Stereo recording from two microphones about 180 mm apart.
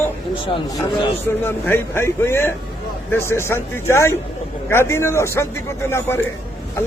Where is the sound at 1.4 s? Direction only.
10° left (ahead or behind).